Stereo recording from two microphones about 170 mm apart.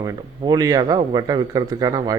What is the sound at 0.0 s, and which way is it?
Speech, 20° right (ahead or behind).